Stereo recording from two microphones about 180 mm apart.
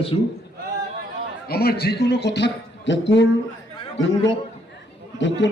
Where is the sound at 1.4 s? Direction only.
60° left (ahead or behind); by 3.2 s 90° left.